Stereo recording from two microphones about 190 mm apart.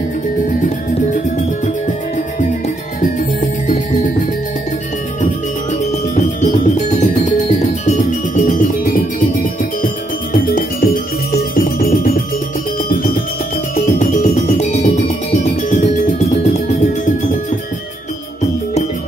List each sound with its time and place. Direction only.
0.6 s music: 40° left (ahead or behind)
3.0 s music: 40° left (ahead or behind)
5.2 s music: 40° left (ahead or behind)
13.7 s music: 40° left (ahead or behind)